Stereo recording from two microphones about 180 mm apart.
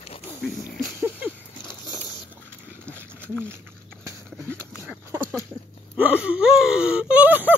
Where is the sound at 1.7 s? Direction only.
25° left (ahead or behind).